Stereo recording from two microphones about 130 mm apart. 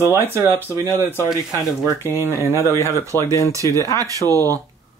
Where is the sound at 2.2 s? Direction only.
20° right (ahead or behind).